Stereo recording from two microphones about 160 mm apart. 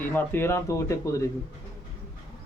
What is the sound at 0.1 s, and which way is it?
A man's voice, 15° left (ahead or behind).